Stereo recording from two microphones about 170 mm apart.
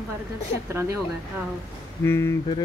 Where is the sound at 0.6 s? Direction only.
15° right (ahead or behind).